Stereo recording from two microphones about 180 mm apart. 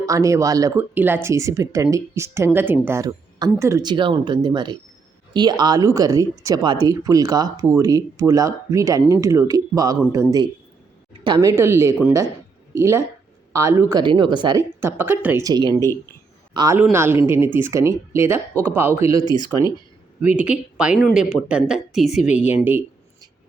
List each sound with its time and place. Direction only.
0.0 s speech: 20° right (ahead or behind)
14.8 s speech: 10° right (ahead or behind)